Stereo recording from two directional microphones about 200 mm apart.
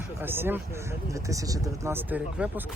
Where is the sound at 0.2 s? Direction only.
10° right (ahead or behind).